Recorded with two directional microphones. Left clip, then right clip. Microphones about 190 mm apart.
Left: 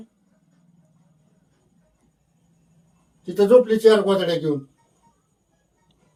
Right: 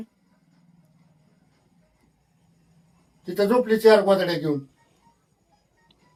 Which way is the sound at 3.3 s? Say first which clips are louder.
Left 6 dB; 10° right (ahead or behind).